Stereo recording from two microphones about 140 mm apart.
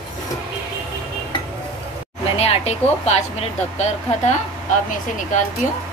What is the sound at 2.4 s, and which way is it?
A woman's voice, 45° left (ahead or behind).